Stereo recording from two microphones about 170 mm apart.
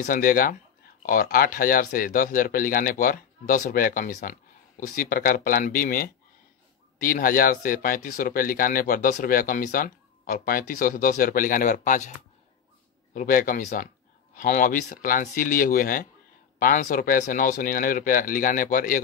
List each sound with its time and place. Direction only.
0.0 s speech: 55° left (ahead or behind)
13.1 s speech: 55° left (ahead or behind)